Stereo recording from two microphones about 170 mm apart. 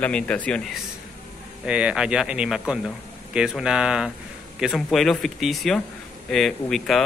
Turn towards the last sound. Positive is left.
turn(degrees=0)  # may be behind; listen again after turning